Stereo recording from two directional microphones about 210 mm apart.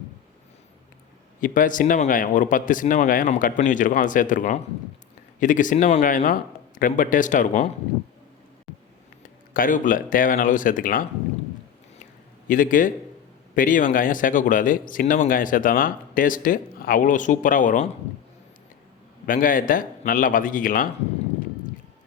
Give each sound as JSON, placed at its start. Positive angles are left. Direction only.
{"t": 1.4, "sound": "speech", "side_deg": 40}
{"t": 9.5, "sound": "speech", "side_deg": 40}
{"t": 12.5, "sound": "speech", "side_deg": 40}
{"t": 19.2, "sound": "speech", "side_deg": 40}